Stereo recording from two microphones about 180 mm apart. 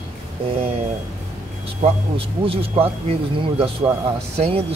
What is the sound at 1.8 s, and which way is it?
Speech, 30° right (ahead or behind).